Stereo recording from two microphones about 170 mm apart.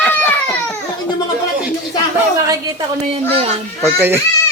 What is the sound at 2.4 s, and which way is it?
A woman's voice, 20° right (ahead or behind).